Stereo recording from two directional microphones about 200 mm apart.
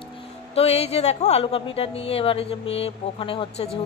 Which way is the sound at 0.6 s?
30° left (ahead or behind).